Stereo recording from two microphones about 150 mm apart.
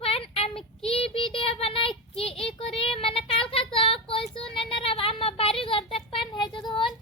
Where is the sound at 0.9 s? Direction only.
40° left (ahead or behind).